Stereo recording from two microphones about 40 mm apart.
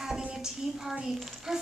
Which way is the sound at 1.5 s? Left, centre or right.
Centre.